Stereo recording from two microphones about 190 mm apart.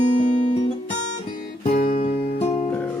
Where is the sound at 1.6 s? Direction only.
35° left (ahead or behind).